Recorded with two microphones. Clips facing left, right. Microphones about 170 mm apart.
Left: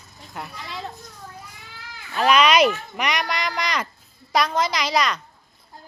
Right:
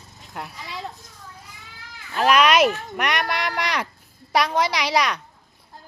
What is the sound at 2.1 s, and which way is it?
Speech, 5° right (ahead or behind).